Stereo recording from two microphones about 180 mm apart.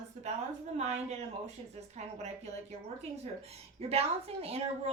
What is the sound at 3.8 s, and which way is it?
A woman's voice, 35° right (ahead or behind).